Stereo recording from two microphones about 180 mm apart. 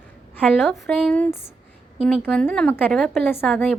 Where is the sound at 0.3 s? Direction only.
5° left (ahead or behind).